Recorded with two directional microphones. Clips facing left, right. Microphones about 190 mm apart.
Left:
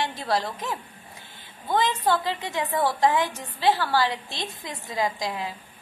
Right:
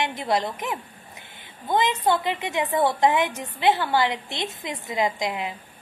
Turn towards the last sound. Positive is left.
turn(degrees=-20)  # may be behind; listen again after turning